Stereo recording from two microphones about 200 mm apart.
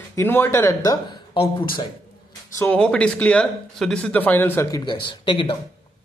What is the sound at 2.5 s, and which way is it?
A man's voice, 10° left (ahead or behind).